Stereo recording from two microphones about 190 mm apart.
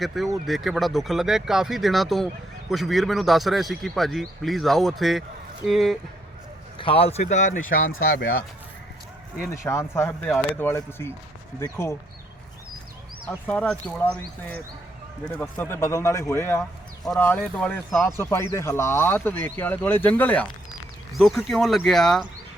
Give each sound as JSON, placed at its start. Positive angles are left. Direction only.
{"t": 0.0, "sound": "speech", "side_deg": 0}
{"t": 6.7, "sound": "speech", "side_deg": 30}
{"t": 9.6, "sound": "speech", "side_deg": 15}
{"t": 13.2, "sound": "speech", "side_deg": 5}